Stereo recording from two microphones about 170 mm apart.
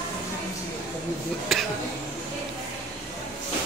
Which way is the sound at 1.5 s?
Centre (ahead or behind).